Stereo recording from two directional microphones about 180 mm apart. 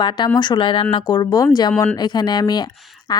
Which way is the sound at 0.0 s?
25° left (ahead or behind).